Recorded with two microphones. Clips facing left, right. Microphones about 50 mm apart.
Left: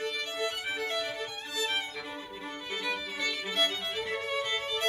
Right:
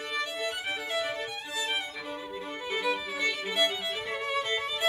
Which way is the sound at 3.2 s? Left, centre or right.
Centre.